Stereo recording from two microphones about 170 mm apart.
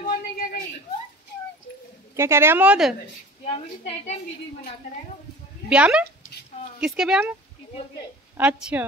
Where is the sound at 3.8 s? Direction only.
40° left (ahead or behind).